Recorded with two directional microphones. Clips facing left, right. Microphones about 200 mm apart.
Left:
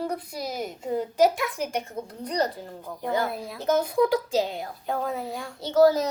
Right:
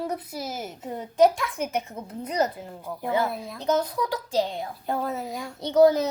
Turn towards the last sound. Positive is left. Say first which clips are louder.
# right 1 dB
turn(degrees=-20)  # may be behind; listen again after turning